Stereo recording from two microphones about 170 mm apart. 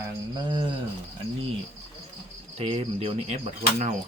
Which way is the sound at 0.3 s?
25° right (ahead or behind).